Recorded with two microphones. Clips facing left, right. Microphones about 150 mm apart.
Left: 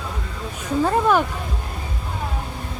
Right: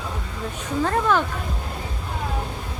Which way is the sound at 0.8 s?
15° left (ahead or behind).